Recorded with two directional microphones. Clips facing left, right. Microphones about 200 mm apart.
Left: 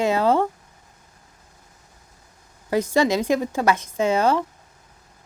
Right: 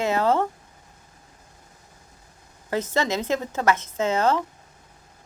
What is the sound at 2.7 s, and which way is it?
A woman's voice, 15° left (ahead or behind).